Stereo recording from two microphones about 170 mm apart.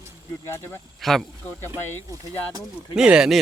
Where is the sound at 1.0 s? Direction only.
Centre (ahead or behind).